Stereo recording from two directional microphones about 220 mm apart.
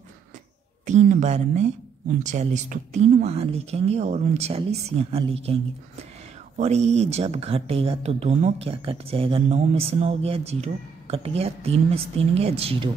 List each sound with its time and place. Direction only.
0.8 s speech: 35° right (ahead or behind)
6.6 s speech: 30° right (ahead or behind)